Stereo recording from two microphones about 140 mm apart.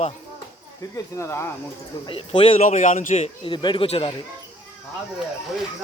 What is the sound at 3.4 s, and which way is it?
Speech, 35° left (ahead or behind).